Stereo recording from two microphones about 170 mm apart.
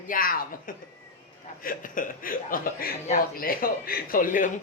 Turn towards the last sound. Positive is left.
turn(degrees=50)  # may be behind; listen again after turning